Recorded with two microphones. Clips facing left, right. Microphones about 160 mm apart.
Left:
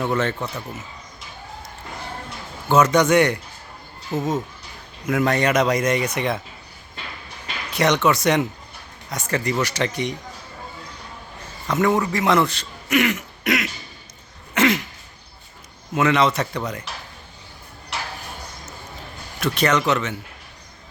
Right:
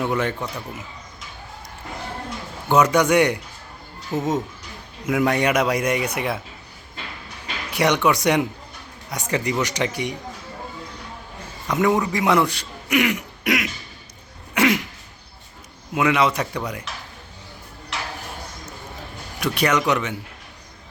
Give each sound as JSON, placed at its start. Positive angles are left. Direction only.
{"t": 0.0, "sound": "a man's voice", "side_deg": -10}
{"t": 2.6, "sound": "a man's voice", "side_deg": -15}
{"t": 7.7, "sound": "a man's voice", "side_deg": -10}
{"t": 11.7, "sound": "a man's voice", "side_deg": -15}
{"t": 14.5, "sound": "throat clearing", "side_deg": -10}
{"t": 16.0, "sound": "a man's voice", "side_deg": -10}
{"t": 19.4, "sound": "a man's voice", "side_deg": -10}